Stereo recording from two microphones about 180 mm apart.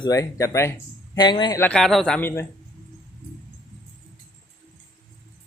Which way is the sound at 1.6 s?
5° left (ahead or behind).